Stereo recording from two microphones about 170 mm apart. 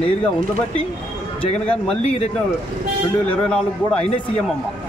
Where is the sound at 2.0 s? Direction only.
40° left (ahead or behind).